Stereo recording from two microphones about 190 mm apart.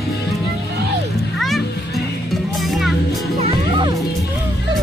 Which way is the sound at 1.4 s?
Centre (ahead or behind).